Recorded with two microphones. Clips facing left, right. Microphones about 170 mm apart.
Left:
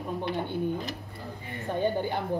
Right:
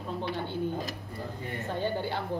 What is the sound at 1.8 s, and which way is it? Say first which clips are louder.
Speech: left 4 dB; 15° left (ahead or behind).